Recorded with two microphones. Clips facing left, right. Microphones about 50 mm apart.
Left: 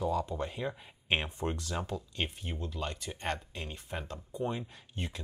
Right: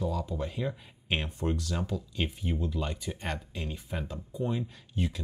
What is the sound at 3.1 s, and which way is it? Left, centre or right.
Speech, centre.